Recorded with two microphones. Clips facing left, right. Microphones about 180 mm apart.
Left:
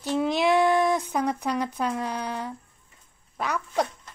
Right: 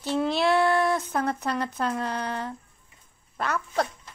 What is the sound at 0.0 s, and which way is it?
Child singing, 15° left (ahead or behind).